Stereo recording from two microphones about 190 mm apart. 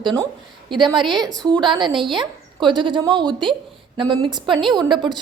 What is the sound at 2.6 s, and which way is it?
A woman's voice, 25° right (ahead or behind).